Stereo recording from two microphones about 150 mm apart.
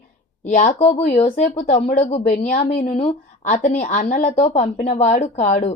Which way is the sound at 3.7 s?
50° left (ahead or behind).